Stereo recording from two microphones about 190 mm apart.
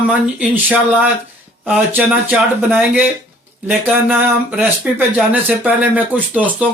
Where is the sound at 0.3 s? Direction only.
10° right (ahead or behind).